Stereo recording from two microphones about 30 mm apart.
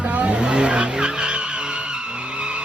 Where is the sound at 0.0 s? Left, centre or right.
Right.